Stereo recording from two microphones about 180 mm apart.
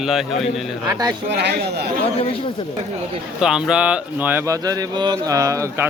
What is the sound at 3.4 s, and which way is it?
A man's voice, 5° right (ahead or behind).